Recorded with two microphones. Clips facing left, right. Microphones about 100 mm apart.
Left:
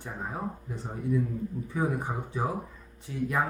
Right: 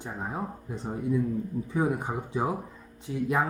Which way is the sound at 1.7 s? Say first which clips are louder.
Right 3 dB; 20° right (ahead or behind).